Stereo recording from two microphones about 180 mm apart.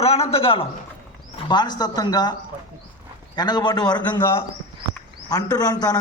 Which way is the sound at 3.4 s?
25° left (ahead or behind).